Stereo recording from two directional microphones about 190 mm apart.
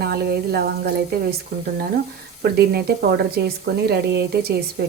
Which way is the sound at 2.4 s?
55° right (ahead or behind).